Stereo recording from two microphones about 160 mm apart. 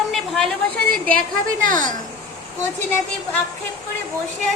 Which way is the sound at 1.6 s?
55° right (ahead or behind).